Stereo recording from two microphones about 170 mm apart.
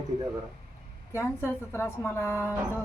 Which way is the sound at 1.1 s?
15° left (ahead or behind).